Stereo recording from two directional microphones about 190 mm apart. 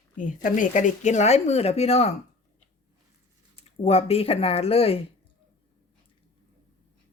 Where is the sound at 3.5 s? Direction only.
30° left (ahead or behind).